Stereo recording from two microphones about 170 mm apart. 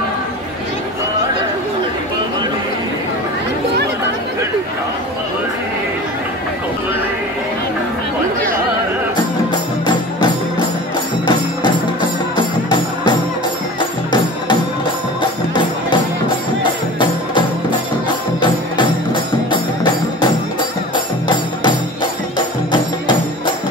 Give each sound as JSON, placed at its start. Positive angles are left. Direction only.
{"t": 11.2, "sound": "music", "side_deg": 25}
{"t": 13.7, "sound": "music", "side_deg": 25}
{"t": 19.5, "sound": "music", "side_deg": 25}
{"t": 22.7, "sound": "music", "side_deg": 25}